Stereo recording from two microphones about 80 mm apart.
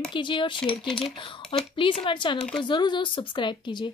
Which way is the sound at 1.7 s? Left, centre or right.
Left.